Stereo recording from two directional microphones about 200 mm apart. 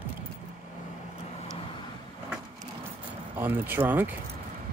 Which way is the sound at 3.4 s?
10° right (ahead or behind).